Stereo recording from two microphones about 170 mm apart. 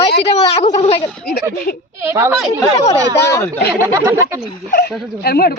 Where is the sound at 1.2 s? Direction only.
70° left (ahead or behind).